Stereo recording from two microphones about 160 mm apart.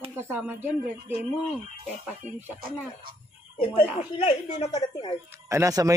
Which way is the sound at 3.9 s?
45° left (ahead or behind).